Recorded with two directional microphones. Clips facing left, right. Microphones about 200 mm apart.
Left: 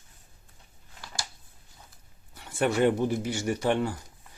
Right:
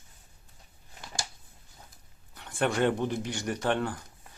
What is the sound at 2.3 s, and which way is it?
Speech, 5° left (ahead or behind).